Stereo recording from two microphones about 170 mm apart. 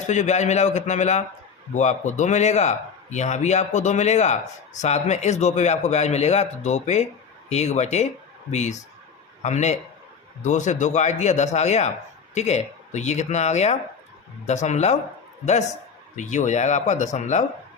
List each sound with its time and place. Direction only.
0.1 s a man's voice: 45° left (ahead or behind)